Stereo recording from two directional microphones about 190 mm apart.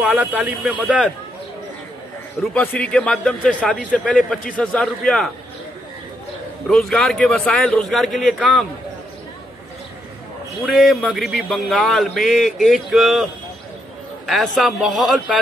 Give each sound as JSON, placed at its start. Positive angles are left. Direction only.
{"t": 0.0, "sound": "speech", "side_deg": -10}
{"t": 2.5, "sound": "a man's voice", "side_deg": 5}
{"t": 6.7, "sound": "a man's voice", "side_deg": 0}
{"t": 10.6, "sound": "a man's voice", "side_deg": 0}